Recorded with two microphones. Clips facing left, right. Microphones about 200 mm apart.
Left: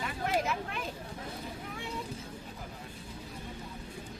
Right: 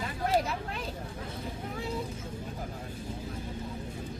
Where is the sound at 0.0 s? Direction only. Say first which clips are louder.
Right 3 dB; 35° right (ahead or behind).